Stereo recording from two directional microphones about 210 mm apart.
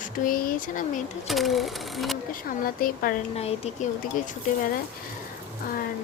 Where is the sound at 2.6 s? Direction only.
45° left (ahead or behind).